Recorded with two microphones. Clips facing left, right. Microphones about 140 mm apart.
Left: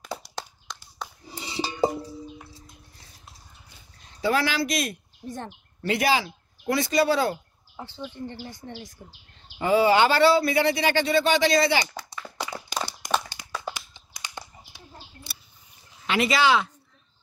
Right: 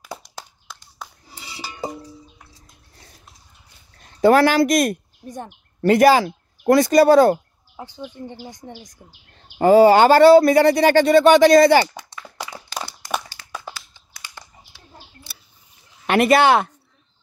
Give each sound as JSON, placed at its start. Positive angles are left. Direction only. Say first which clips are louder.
{"t": 0.7, "sound": "a sound", "louder": "left 1 dB", "side_deg": -5}
{"t": 1.3, "sound": "cutlery", "louder": "left 7 dB", "side_deg": 25}
{"t": 4.0, "sound": "speech", "louder": "right 11 dB", "side_deg": -55}
{"t": 7.7, "sound": "speech", "louder": "right 2 dB", "side_deg": -15}
{"t": 9.6, "sound": "speech", "louder": "right 8 dB", "side_deg": -45}
{"t": 12.7, "sound": "a sound", "louder": "even", "side_deg": 15}
{"t": 13.3, "sound": "crumpling", "louder": "left 1 dB", "side_deg": 15}
{"t": 16.1, "sound": "speech", "louder": "right 7 dB", "side_deg": -55}